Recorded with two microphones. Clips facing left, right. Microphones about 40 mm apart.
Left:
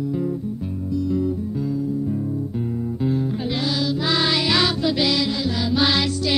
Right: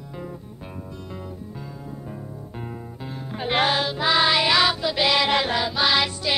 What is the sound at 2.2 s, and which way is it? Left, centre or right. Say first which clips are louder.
Music: left 12 dB; centre.